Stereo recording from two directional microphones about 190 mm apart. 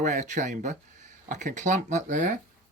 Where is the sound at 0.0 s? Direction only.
40° right (ahead or behind).